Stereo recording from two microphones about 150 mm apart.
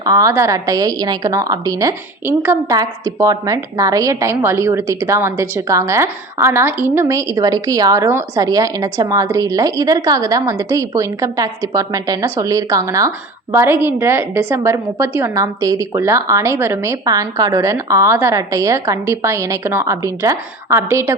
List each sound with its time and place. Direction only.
0.0 s a woman's voice: 20° right (ahead or behind)